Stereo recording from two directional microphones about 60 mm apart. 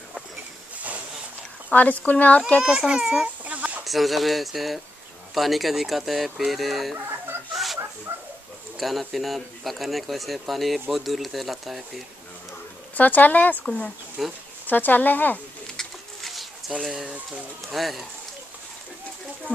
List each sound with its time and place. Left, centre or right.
1.7 s speech: left
2.6 s a child's voice: centre
3.4 s a sound: right
3.8 s speech: centre
7.5 s dog: centre
8.1 s bow-wow: right
8.7 s speech: centre
12.9 s speech: left
14.2 s speech: centre
14.7 s speech: left
15.7 s pigeon: centre
17.7 s speech: centre